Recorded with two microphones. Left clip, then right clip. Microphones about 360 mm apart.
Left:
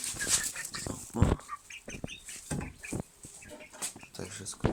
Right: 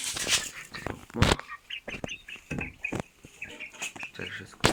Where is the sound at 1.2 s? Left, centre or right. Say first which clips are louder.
Right 8 dB; right.